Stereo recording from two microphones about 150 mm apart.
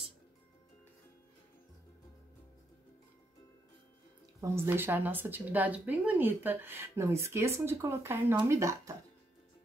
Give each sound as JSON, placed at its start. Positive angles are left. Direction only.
{"t": 4.4, "sound": "speech", "side_deg": -15}